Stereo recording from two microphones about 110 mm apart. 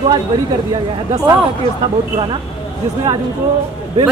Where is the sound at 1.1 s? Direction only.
35° right (ahead or behind).